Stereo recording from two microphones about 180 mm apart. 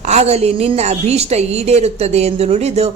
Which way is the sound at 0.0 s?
40° right (ahead or behind).